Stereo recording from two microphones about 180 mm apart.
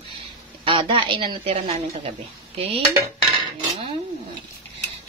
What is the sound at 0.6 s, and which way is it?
A woman's voice, 30° right (ahead or behind).